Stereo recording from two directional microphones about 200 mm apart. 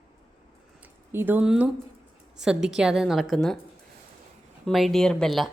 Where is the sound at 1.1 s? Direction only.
10° right (ahead or behind).